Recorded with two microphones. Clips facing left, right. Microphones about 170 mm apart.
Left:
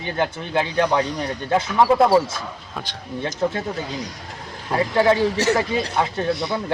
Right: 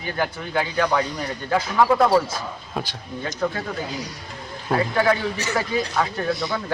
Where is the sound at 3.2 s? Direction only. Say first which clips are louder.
Left 3 dB; 25° left (ahead or behind).